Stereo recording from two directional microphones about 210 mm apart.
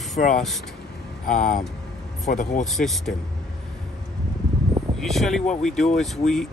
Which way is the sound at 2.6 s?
Centre (ahead or behind).